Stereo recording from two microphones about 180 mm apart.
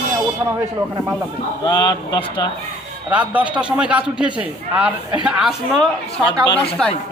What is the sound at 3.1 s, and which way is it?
A man's voice, 10° right (ahead or behind).